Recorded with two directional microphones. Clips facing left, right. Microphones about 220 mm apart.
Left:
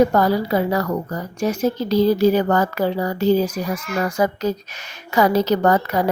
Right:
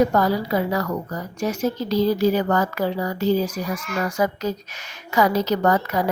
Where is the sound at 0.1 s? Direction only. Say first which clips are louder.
Left 3 dB; 30° left (ahead or behind).